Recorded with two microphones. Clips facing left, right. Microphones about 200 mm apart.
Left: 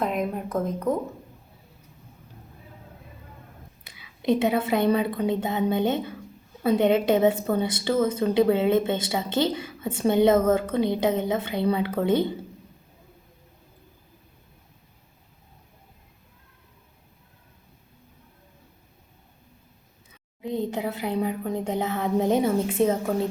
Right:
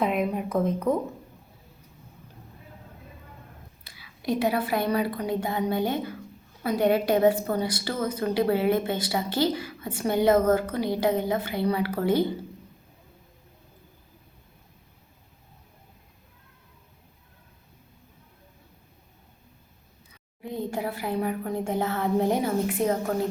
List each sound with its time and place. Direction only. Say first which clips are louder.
0.0 s a woman's voice: right 1 dB; centre (ahead or behind)
3.9 s a woman's voice: left 4 dB; 20° left (ahead or behind)
20.4 s a woman's voice: left 3 dB; 20° left (ahead or behind)